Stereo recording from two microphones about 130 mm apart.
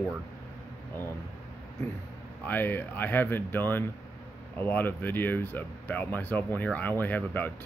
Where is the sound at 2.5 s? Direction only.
15° left (ahead or behind).